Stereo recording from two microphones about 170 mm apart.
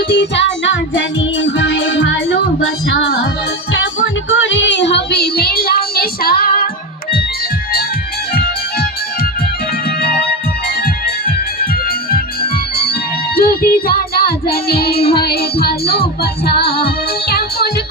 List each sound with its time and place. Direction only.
0.1 s music: 90° left
4.4 s child singing: 90° left; by 6.5 s 60° left (ahead or behind)
13.3 s music: 60° left (ahead or behind)